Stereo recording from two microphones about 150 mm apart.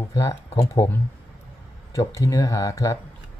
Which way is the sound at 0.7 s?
20° left (ahead or behind).